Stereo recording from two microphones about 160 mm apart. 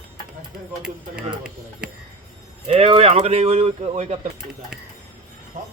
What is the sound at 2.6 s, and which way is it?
A man's voice, 35° right (ahead or behind).